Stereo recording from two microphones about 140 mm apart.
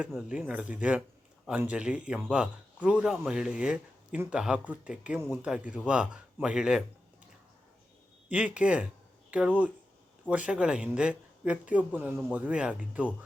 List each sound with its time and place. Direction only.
0.0 s speech: 5° right (ahead or behind)
8.3 s speech: 10° right (ahead or behind)